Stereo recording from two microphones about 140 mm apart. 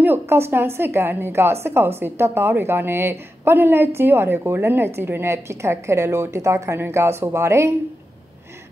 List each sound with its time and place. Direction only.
0.0 s a woman's voice: 15° right (ahead or behind)